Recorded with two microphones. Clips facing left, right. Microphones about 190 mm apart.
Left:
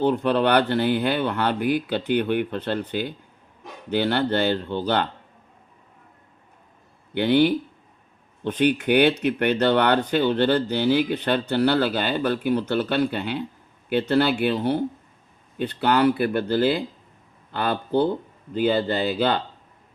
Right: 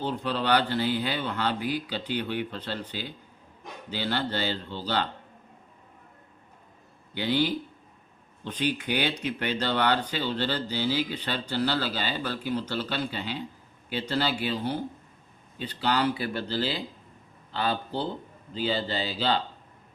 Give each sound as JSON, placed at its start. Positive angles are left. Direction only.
{"t": 0.0, "sound": "speech", "side_deg": 60}
{"t": 7.1, "sound": "speech", "side_deg": 60}